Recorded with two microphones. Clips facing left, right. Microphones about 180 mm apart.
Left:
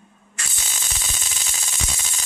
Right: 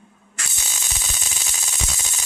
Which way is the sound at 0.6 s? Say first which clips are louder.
Even; 10° right (ahead or behind).